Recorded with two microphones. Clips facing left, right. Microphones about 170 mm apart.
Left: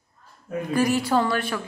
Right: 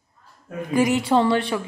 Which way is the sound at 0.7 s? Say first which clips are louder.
Right 3 dB; 20° right (ahead or behind).